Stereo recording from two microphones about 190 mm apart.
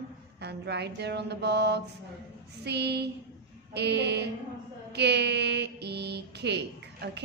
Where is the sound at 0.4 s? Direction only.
60° right (ahead or behind).